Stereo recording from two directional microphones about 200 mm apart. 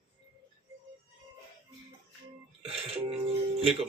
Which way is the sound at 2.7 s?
30° right (ahead or behind).